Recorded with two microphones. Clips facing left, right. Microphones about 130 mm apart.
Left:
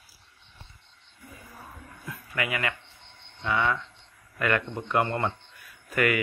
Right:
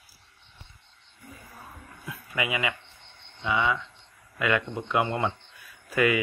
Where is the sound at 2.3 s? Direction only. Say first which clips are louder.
Right 1 dB; 15° right (ahead or behind).